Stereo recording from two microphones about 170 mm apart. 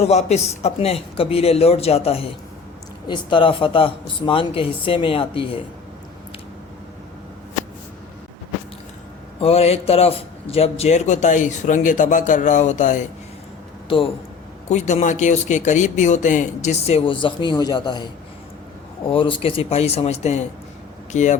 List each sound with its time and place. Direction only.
0.0 s speech: 40° left (ahead or behind)
9.4 s a man's voice: 35° left (ahead or behind)
13.8 s speech: 30° left (ahead or behind)
14.7 s a man's voice: 45° left (ahead or behind)